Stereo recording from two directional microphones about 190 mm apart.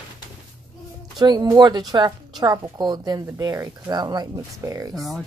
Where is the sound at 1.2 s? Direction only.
20° right (ahead or behind).